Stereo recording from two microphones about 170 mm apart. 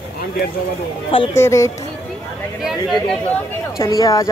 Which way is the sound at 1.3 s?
15° left (ahead or behind).